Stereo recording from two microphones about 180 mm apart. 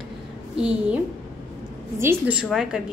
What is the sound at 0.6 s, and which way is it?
Speech, 5° right (ahead or behind).